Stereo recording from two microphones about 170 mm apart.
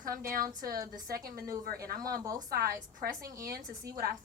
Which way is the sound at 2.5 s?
60° right (ahead or behind).